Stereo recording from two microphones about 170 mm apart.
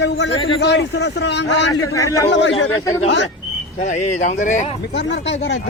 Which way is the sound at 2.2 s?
90° left.